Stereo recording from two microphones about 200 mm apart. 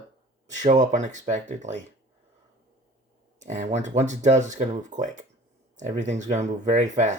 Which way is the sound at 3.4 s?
35° right (ahead or behind).